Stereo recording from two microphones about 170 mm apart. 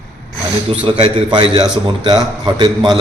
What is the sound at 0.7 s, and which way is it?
A man's voice, 30° right (ahead or behind).